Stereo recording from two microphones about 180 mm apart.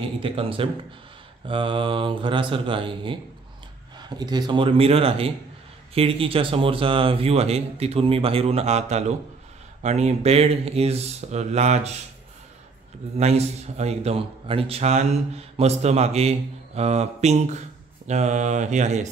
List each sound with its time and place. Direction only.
0.2 s a man's voice: 30° right (ahead or behind)
13.2 s a man's voice: 35° right (ahead or behind)